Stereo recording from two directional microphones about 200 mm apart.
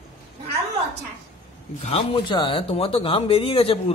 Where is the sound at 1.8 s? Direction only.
25° left (ahead or behind).